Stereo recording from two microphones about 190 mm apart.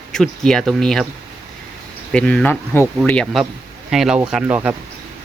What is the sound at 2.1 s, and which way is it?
Speech, 5° left (ahead or behind).